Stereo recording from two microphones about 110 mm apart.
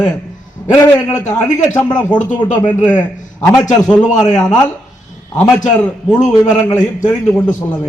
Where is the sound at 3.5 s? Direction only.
35° left (ahead or behind).